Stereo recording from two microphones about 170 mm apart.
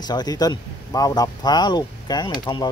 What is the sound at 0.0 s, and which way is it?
Speech, 25° left (ahead or behind).